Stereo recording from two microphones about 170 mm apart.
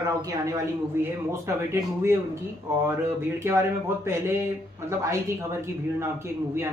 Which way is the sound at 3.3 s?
15° right (ahead or behind).